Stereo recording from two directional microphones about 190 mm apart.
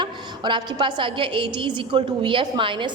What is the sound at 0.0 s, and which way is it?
A woman's voice, 25° right (ahead or behind).